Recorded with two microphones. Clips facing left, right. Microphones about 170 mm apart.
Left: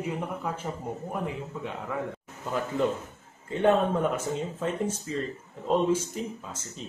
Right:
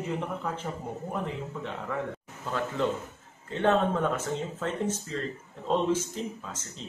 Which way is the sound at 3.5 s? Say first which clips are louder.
Left 2 dB; 10° left (ahead or behind).